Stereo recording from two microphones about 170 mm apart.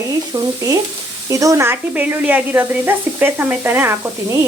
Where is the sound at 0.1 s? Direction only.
20° right (ahead or behind).